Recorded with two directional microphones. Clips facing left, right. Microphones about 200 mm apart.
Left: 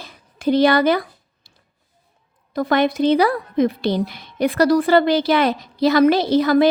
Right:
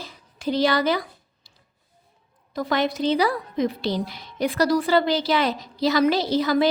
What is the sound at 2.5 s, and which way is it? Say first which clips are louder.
A woman's voice: left 6 dB; 55° left (ahead or behind).